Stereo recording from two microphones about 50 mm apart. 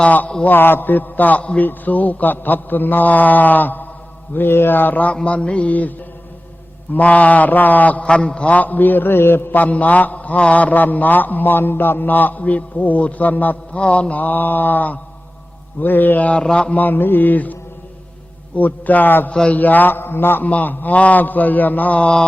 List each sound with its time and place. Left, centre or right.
0.4 s a man's voice: left
4.4 s a man's voice: left
5.2 s mantra: left
6.9 s a man's voice: left
9.6 s a man's voice: left
13.7 s a man's voice: left
16.3 s mantra: centre
16.7 s a man's voice: left
19.3 s mantra: left
19.5 s a man's voice: left
20.4 s a man's voice: left